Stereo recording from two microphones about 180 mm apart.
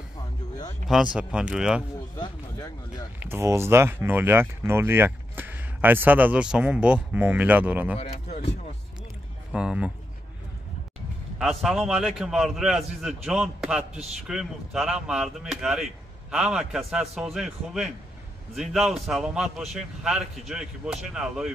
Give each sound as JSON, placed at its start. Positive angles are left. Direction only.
{"t": 1.1, "sound": "speech", "side_deg": -5}
{"t": 2.1, "sound": "speech", "side_deg": 20}
{"t": 3.2, "sound": "speech", "side_deg": -15}
{"t": 8.0, "sound": "speech", "side_deg": 35}
{"t": 9.5, "sound": "speech", "side_deg": -5}
{"t": 11.3, "sound": "speech", "side_deg": 0}